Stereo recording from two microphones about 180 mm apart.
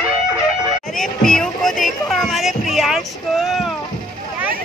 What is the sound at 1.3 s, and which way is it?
Music, 5° left (ahead or behind).